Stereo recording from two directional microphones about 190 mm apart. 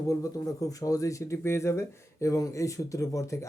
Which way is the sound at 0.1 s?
15° left (ahead or behind).